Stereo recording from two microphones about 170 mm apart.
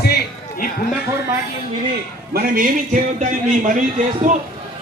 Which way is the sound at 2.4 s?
55° right (ahead or behind).